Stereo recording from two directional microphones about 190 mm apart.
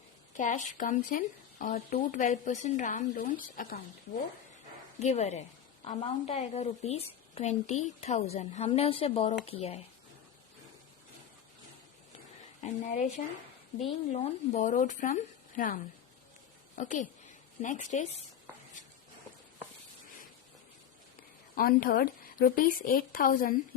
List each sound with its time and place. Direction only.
0.3 s speech: 40° left (ahead or behind)
4.9 s a woman's voice: 35° left (ahead or behind)
12.6 s a woman's voice: 40° left (ahead or behind)
21.5 s a woman's voice: 50° left (ahead or behind)